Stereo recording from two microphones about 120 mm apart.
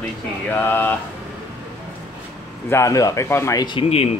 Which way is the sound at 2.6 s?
25° left (ahead or behind).